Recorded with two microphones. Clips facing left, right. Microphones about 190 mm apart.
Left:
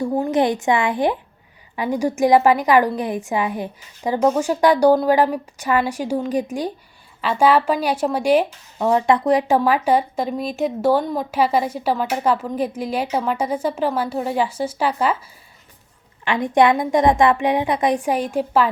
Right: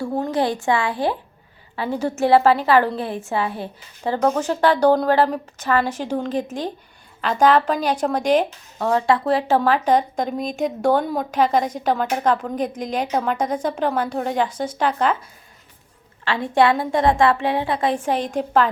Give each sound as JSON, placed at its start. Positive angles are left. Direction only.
{"t": 0.0, "sound": "a woman's voice", "side_deg": 20}
{"t": 16.2, "sound": "a woman's voice", "side_deg": 20}